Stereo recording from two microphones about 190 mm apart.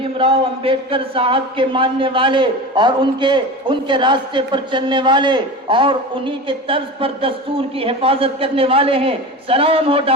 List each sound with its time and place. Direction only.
0.0 s a man's voice: 30° right (ahead or behind)